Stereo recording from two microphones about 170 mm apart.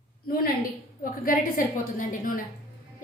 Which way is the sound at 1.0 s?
55° left (ahead or behind).